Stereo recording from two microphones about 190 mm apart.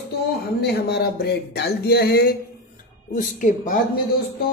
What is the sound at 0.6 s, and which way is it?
Speech, 55° left (ahead or behind).